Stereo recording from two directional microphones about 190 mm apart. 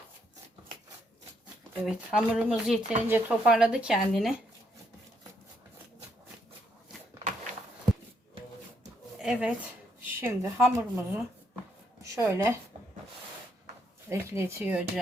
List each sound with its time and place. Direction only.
1.7 s speech: 5° right (ahead or behind)
9.1 s a woman's voice: 5° right (ahead or behind)
14.1 s a woman's voice: 15° right (ahead or behind)